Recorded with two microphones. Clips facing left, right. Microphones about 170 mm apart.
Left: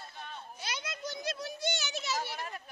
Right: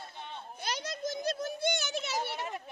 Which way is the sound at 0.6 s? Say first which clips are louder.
Right 5 dB; 45° right (ahead or behind).